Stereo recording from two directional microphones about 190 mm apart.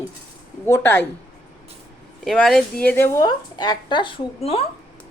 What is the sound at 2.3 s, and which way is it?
Speech, centre (ahead or behind).